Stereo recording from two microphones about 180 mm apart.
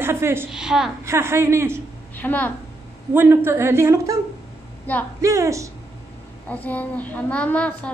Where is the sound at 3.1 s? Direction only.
10° right (ahead or behind).